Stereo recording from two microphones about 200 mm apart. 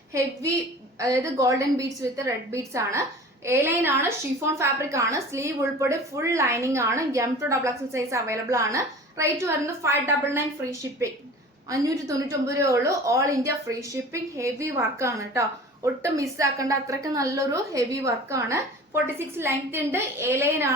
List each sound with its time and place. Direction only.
0.9 s a woman's voice: 15° right (ahead or behind)